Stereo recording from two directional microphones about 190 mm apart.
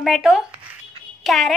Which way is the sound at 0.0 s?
Centre (ahead or behind).